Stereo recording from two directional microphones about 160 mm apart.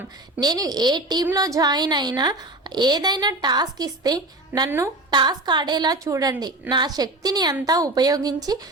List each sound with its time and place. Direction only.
0.3 s speech: 25° right (ahead or behind)